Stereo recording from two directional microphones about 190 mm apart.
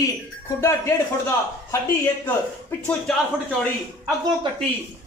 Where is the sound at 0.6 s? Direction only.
15° left (ahead or behind).